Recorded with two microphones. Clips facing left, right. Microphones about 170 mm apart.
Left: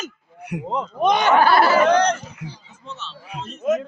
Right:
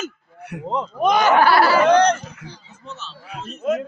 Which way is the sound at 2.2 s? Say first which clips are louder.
Left 1 dB; 15° left (ahead or behind).